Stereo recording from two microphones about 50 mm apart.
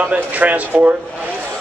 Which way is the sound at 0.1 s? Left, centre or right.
Right.